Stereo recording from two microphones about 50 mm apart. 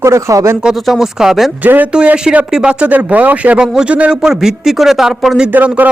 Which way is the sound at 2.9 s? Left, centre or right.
Right.